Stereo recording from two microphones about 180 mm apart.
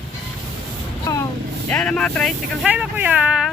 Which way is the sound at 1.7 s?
5° left (ahead or behind).